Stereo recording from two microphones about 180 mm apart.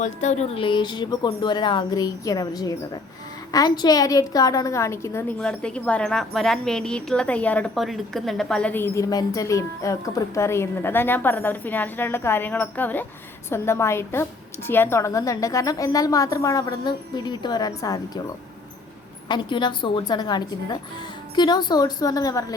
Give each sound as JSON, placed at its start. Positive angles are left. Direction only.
{"t": 0.0, "sound": "a woman's voice", "side_deg": 40}
{"t": 5.4, "sound": "a woman's voice", "side_deg": 5}
{"t": 19.3, "sound": "a woman's voice", "side_deg": 25}